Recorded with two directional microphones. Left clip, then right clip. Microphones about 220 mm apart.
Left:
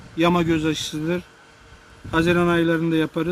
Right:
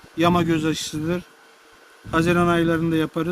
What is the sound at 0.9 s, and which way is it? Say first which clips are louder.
Speech: left 1 dB; 35° right (ahead or behind).